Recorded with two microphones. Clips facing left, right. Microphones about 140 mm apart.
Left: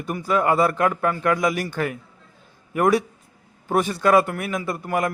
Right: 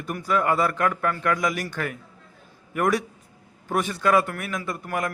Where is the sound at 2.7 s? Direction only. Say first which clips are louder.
Left 4 dB; 30° left (ahead or behind).